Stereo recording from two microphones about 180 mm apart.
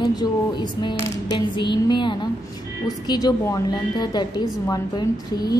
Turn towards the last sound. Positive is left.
turn(degrees=20)  # may be behind; listen again after turning